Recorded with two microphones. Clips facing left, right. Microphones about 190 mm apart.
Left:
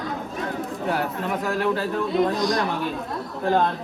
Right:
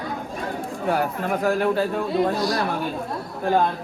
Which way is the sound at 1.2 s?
50° right (ahead or behind).